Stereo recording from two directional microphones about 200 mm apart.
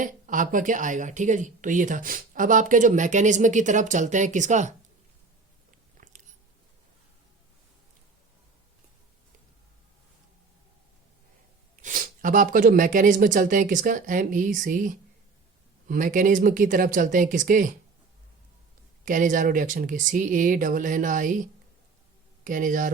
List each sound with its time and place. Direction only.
0.0 s speech: 40° right (ahead or behind)
6.0 s biting: 40° right (ahead or behind)
11.8 s speech: 40° right (ahead or behind)
19.0 s speech: 40° right (ahead or behind)
22.4 s speech: 40° right (ahead or behind)